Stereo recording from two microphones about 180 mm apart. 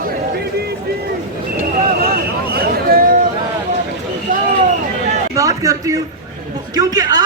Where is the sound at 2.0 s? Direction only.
55° right (ahead or behind).